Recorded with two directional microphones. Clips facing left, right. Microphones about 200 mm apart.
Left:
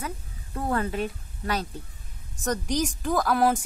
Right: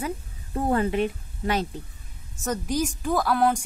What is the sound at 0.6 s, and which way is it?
A woman's voice, 25° right (ahead or behind).